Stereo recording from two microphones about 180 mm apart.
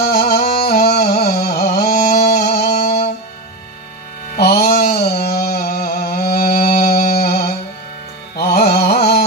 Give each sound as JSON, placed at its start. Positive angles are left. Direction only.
{"t": 0.0, "sound": "music", "side_deg": 60}
{"t": 4.4, "sound": "a sound", "side_deg": 60}
{"t": 8.4, "sound": "carnatic music", "side_deg": 60}